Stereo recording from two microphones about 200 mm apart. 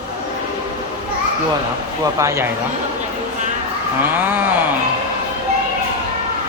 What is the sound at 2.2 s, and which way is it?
Speech, 15° right (ahead or behind).